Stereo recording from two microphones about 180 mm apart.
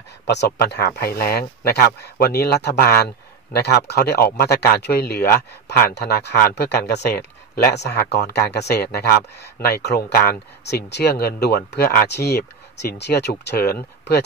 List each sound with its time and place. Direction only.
0.6 s speech: 65° left (ahead or behind)